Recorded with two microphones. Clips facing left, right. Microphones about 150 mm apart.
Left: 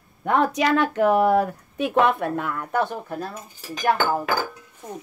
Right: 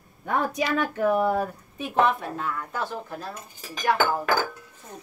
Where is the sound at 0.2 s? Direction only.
90° left; by 3.3 s 60° left (ahead or behind).